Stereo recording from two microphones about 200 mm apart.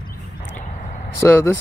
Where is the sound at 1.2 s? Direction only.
10° left (ahead or behind).